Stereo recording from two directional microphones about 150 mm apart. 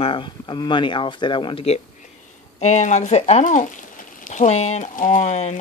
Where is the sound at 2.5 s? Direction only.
50° left (ahead or behind).